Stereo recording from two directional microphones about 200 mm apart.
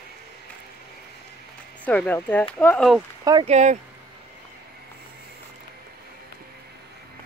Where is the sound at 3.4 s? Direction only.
35° right (ahead or behind).